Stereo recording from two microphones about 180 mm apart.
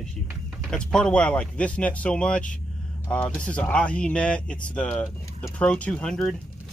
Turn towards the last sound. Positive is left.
turn(degrees=5)  # may be behind; listen again after turning